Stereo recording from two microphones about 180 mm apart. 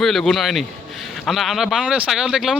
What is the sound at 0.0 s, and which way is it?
Speech, centre (ahead or behind).